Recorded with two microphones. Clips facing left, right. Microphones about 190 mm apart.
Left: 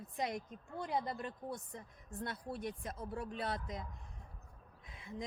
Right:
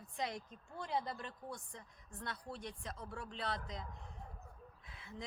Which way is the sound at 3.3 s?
50° left (ahead or behind).